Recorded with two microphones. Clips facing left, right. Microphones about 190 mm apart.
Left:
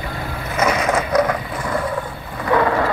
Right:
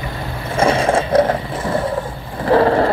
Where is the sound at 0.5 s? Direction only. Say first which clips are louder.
Right 4 dB; 30° right (ahead or behind).